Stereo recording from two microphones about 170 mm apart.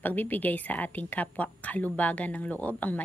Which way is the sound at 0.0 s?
10° left (ahead or behind).